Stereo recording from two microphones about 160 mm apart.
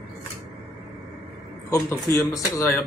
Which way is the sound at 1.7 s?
15° left (ahead or behind).